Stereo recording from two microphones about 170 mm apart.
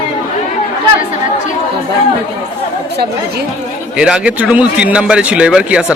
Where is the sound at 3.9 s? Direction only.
5° right (ahead or behind).